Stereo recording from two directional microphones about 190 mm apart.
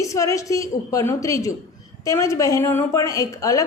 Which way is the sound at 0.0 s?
15° left (ahead or behind).